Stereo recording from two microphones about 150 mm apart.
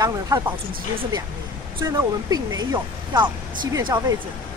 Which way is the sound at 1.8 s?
25° right (ahead or behind).